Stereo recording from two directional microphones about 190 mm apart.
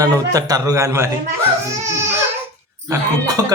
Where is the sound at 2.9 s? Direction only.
20° right (ahead or behind).